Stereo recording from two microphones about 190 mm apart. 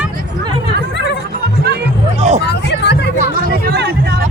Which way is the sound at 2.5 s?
65° left (ahead or behind).